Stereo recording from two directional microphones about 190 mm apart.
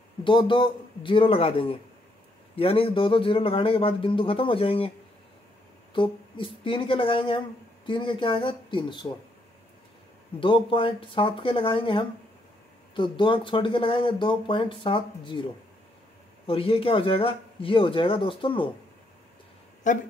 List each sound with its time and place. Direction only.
0.2 s speech: 25° left (ahead or behind)
5.9 s speech: 25° left (ahead or behind)
10.4 s speech: 25° left (ahead or behind)
16.4 s speech: 30° left (ahead or behind)
19.9 s speech: 40° left (ahead or behind)